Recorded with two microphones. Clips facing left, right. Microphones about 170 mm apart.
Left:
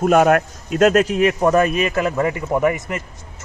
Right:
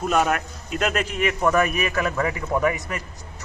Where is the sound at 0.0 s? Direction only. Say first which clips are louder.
Left 8 dB; 50° left (ahead or behind).